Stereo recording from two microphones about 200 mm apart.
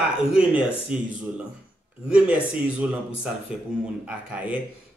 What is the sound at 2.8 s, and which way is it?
Speech, 10° right (ahead or behind).